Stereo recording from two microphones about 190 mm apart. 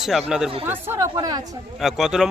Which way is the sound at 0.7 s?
15° right (ahead or behind).